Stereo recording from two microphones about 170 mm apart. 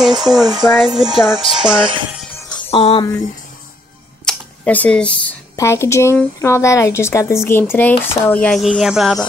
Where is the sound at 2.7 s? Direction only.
35° left (ahead or behind).